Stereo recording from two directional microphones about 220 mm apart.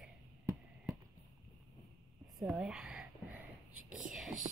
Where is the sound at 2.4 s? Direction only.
Centre (ahead or behind).